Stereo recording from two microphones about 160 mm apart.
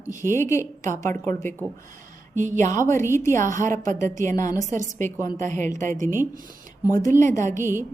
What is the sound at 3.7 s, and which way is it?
A woman's voice, 50° right (ahead or behind).